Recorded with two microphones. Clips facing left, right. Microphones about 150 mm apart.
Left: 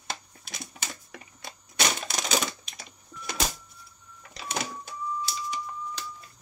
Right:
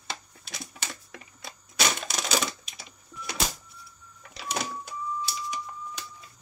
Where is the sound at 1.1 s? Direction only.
Centre (ahead or behind).